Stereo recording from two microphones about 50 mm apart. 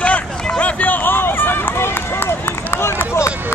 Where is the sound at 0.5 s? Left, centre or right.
Left.